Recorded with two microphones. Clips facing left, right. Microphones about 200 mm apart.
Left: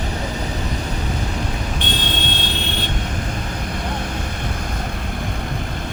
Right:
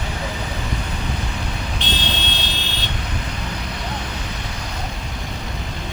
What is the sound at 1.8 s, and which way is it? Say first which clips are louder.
Vehicle: left 1 dB; 50° left (ahead or behind).